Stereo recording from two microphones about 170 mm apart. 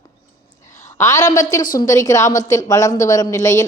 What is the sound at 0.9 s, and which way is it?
A woman's voice, 20° left (ahead or behind).